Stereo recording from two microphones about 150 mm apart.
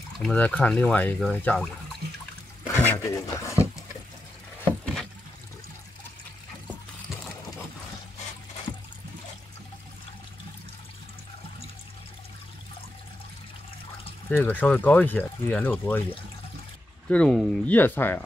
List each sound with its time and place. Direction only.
0.2 s speech: 10° left (ahead or behind)
2.6 s speech: 20° left (ahead or behind)
14.3 s speech: 10° left (ahead or behind)
17.1 s speech: 10° left (ahead or behind)